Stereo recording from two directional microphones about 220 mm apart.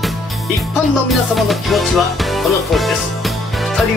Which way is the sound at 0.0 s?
Centre (ahead or behind).